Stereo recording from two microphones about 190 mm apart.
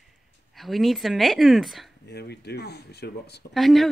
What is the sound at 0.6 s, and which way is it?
Speech, centre (ahead or behind).